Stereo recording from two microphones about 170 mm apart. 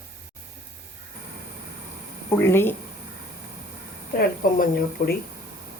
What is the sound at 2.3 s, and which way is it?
Speech, 15° left (ahead or behind).